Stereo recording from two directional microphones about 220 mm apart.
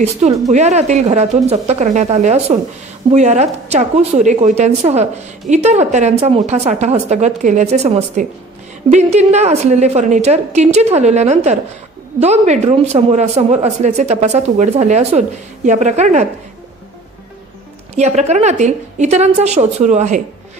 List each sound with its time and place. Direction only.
0.5 s a woman's voice: 30° right (ahead or behind)
17.9 s a woman's voice: 30° right (ahead or behind)